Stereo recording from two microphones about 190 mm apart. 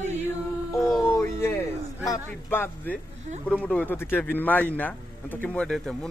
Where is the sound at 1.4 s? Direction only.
15° left (ahead or behind).